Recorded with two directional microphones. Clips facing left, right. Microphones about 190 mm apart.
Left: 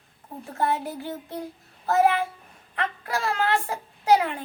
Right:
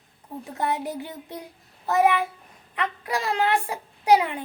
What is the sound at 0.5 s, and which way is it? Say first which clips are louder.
Speech: left 1 dB; 15° right (ahead or behind).